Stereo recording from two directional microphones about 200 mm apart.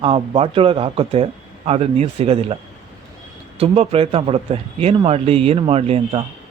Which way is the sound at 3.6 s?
30° right (ahead or behind).